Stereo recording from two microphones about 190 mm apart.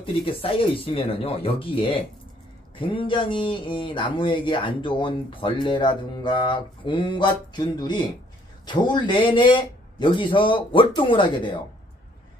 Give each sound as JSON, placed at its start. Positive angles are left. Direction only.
{"t": 0.0, "sound": "speech", "side_deg": 30}